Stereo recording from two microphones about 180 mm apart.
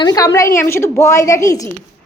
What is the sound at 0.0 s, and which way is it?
A woman's voice, 20° left (ahead or behind).